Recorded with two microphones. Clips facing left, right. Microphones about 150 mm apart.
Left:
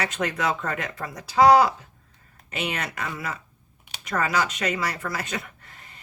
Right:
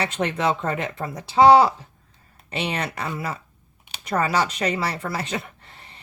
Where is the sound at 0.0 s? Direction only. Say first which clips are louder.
Right 3 dB; 30° right (ahead or behind).